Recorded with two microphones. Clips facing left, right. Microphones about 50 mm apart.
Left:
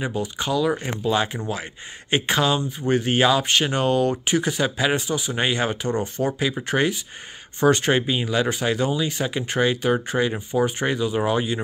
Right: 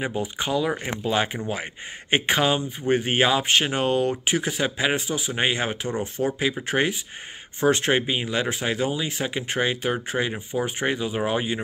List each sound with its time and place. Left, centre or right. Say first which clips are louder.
0.0 s speech: left 1 dB; right